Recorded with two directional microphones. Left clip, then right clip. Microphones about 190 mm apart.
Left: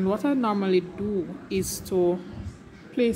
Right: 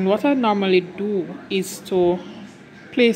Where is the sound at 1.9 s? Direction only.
5° left (ahead or behind).